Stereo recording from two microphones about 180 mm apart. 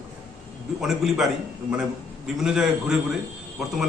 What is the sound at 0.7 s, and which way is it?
A man's voice, 5° right (ahead or behind).